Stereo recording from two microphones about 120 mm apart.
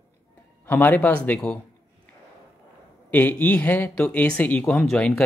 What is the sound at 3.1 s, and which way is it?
Speech, 15° left (ahead or behind).